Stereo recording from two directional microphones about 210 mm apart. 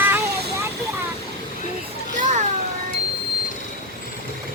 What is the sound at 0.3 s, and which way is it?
Vehicle, 50° right (ahead or behind).